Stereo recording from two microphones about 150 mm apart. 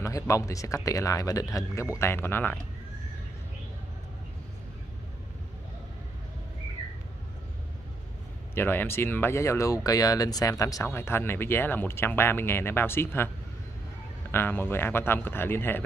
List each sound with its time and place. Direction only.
0.0 s speech: 20° left (ahead or behind)
8.5 s speech: 15° left (ahead or behind)
14.3 s speech: 15° left (ahead or behind)